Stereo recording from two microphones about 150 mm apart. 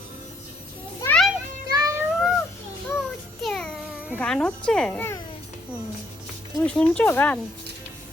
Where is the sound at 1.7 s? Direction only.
20° right (ahead or behind).